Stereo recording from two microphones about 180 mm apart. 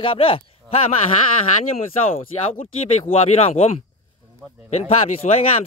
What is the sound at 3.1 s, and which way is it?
Speech, 35° left (ahead or behind).